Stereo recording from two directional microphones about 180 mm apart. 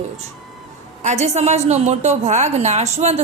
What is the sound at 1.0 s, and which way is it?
A woman's voice, 40° right (ahead or behind).